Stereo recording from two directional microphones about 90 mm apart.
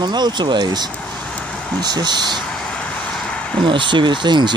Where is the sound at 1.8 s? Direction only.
50° right (ahead or behind).